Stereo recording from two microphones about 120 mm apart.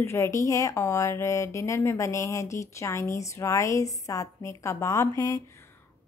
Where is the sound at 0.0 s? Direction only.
25° left (ahead or behind).